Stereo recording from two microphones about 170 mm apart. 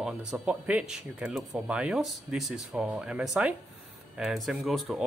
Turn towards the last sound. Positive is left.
turn(degrees=0)  # may be behind; listen again after turning